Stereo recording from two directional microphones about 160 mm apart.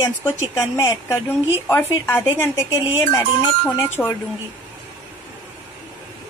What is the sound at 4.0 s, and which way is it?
Speech, 5° left (ahead or behind).